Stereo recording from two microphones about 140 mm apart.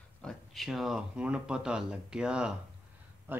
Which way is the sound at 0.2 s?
5° left (ahead or behind).